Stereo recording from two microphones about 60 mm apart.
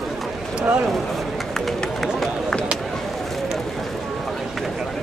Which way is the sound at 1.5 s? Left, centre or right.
Centre.